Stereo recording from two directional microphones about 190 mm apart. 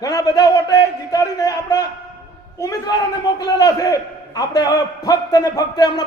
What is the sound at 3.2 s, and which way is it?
A man's voice, 20° left (ahead or behind).